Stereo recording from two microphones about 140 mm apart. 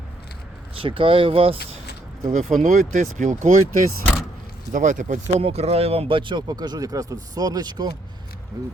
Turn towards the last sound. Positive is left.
turn(degrees=-30)  # may be behind; listen again after turning